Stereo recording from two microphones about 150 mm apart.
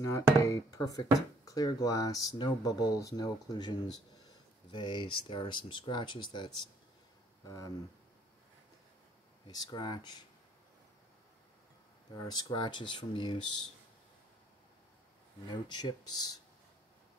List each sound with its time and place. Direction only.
0.1 s speech: 20° left (ahead or behind)
9.5 s speech: 25° left (ahead or behind)
12.3 s speech: 25° left (ahead or behind)
15.7 s speech: 25° left (ahead or behind)